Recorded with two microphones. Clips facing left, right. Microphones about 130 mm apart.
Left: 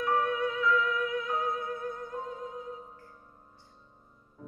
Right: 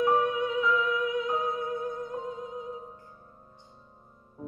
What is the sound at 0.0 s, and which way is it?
Music, 20° right (ahead or behind).